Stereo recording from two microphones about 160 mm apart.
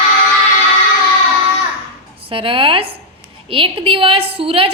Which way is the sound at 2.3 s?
35° right (ahead or behind).